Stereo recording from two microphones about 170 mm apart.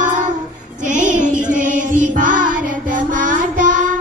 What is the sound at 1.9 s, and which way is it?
Music, 50° right (ahead or behind).